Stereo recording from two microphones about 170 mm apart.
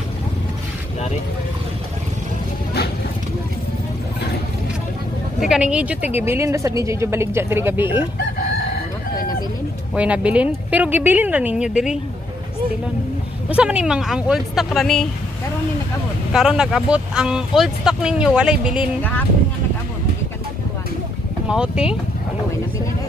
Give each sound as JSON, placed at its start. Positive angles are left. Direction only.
{"t": 5.4, "sound": "speech", "side_deg": -5}
{"t": 9.9, "sound": "speech", "side_deg": -5}
{"t": 13.5, "sound": "speech", "side_deg": -10}
{"t": 16.3, "sound": "speech", "side_deg": -5}
{"t": 21.5, "sound": "speech", "side_deg": -5}